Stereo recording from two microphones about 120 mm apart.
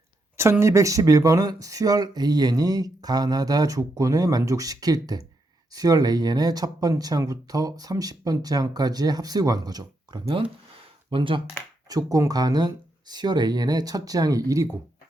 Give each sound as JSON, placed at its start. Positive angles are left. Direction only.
{"t": 0.6, "sound": "speech", "side_deg": -25}
{"t": 11.1, "sound": "speech", "side_deg": -45}
{"t": 11.9, "sound": "speech", "side_deg": -30}